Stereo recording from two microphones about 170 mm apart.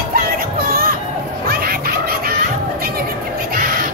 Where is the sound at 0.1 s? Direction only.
60° right (ahead or behind).